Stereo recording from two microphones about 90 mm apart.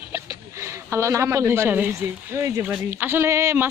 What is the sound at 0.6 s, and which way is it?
Speech, 30° right (ahead or behind).